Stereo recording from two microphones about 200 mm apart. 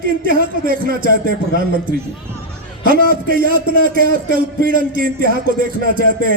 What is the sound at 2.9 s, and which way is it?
A man's voice, 45° right (ahead or behind).